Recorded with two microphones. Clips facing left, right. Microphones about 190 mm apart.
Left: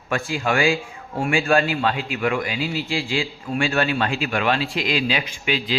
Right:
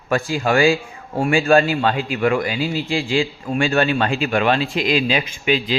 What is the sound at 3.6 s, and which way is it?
Speech, 35° right (ahead or behind).